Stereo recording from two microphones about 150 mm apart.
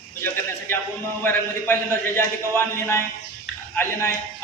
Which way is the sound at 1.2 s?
15° left (ahead or behind).